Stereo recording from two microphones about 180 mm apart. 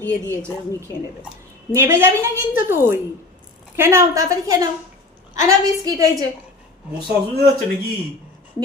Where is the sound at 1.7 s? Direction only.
15° right (ahead or behind).